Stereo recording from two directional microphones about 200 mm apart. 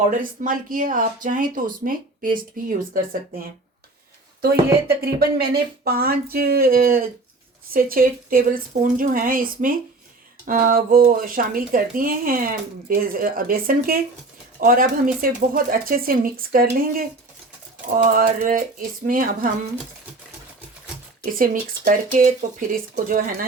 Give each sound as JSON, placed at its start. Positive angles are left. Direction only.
{"t": 0.2, "sound": "speech", "side_deg": -45}
{"t": 4.9, "sound": "speech", "side_deg": -50}
{"t": 17.9, "sound": "speech", "side_deg": -45}
{"t": 21.3, "sound": "speech", "side_deg": -45}